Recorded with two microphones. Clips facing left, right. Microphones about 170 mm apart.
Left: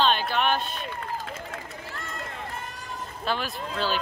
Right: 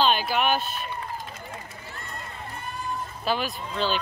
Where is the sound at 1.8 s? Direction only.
90° left.